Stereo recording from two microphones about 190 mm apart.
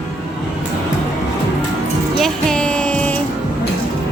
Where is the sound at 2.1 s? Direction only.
Centre (ahead or behind).